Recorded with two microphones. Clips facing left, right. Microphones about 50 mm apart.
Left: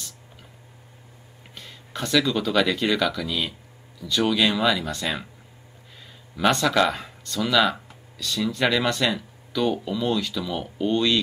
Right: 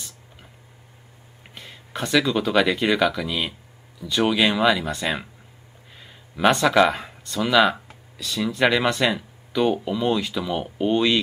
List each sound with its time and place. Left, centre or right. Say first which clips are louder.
1.5 s speech: right 2 dB; centre
6.3 s speech: right 3 dB; centre